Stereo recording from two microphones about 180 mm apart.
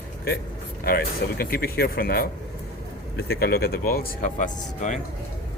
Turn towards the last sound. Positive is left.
turn(degrees=45)  # may be behind; listen again after turning